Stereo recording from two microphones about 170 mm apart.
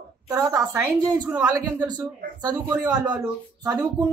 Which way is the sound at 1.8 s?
25° right (ahead or behind).